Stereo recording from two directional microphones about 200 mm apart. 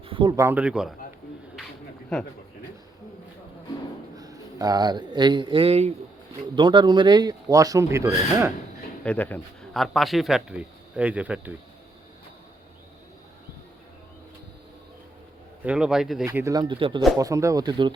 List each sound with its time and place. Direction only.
0.0 s speech: 25° right (ahead or behind)
0.4 s a man's voice: 5° right (ahead or behind)
4.2 s speech: 20° right (ahead or behind)
9.0 s a man's voice: 10° left (ahead or behind)
15.6 s a man's voice: 5° right (ahead or behind)
16.2 s speech: 15° right (ahead or behind)